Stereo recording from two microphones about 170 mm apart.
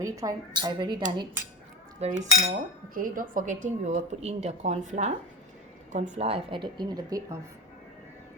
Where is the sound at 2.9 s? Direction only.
55° right (ahead or behind); by 7.3 s 20° right (ahead or behind).